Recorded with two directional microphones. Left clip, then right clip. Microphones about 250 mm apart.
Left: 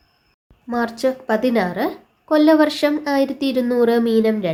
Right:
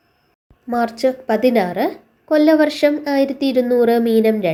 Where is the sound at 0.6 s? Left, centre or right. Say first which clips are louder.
Right 3 dB; centre.